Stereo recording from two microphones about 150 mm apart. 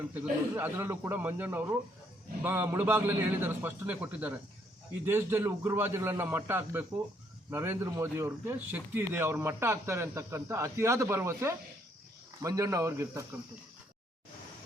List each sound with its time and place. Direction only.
0.1 s speech: 15° right (ahead or behind)